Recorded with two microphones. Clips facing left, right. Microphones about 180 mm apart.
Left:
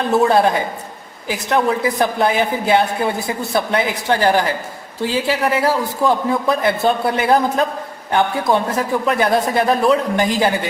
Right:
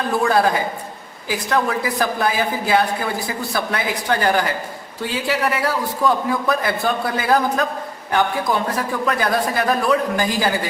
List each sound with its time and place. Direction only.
0.1 s a woman's voice: 25° left (ahead or behind)